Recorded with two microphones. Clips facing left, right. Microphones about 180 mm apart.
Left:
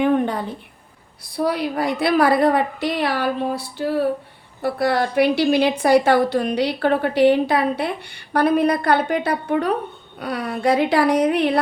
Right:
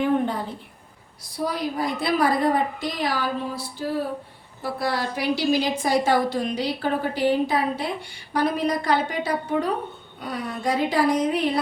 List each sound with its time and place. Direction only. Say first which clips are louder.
1.2 s a woman's voice: left 5 dB; 65° left (ahead or behind)